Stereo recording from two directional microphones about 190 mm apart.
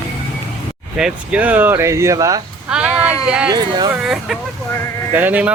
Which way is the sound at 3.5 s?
20° right (ahead or behind).